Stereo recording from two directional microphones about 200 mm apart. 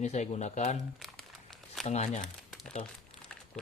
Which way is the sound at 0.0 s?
35° left (ahead or behind).